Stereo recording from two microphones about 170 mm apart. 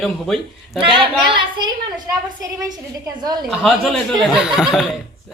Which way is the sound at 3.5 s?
Centre (ahead or behind).